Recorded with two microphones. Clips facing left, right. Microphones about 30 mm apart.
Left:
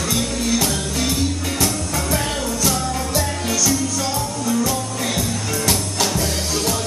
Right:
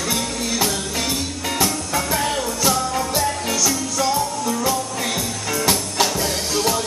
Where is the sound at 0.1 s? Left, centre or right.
Centre.